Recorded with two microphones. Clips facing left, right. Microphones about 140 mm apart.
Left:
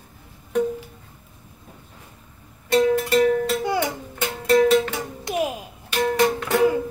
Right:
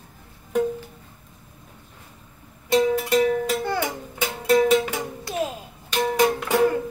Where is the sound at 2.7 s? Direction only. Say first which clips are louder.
Left 1 dB; 5° right (ahead or behind).